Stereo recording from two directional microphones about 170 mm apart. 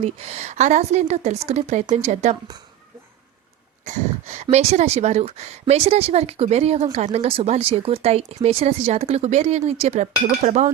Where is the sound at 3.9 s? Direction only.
40° right (ahead or behind).